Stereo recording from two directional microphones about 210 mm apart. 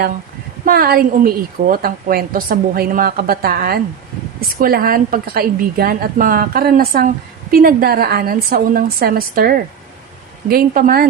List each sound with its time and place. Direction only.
0.6 s a woman's voice: 45° right (ahead or behind)